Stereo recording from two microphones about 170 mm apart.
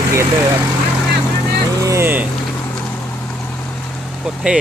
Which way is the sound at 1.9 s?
15° right (ahead or behind).